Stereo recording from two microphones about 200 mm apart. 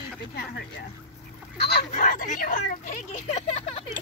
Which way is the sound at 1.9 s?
40° left (ahead or behind).